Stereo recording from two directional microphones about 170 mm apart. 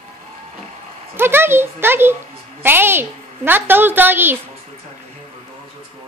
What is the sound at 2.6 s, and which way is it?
A woman's voice, 15° right (ahead or behind).